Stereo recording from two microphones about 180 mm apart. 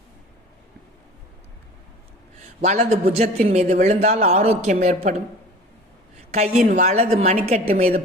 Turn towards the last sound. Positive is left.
turn(degrees=-35)  # may be behind; listen again after turning